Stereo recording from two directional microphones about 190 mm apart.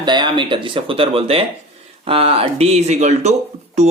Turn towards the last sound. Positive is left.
turn(degrees=-35)  # may be behind; listen again after turning